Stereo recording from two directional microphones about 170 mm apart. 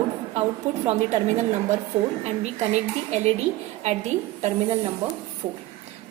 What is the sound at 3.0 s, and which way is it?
Speech, 40° right (ahead or behind).